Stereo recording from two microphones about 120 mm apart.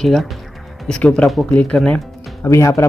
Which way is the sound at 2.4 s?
25° left (ahead or behind).